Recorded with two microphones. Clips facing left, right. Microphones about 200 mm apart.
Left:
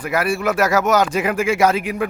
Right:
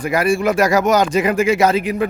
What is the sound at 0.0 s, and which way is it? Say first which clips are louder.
A man's voice: right 3 dB; 5° left (ahead or behind).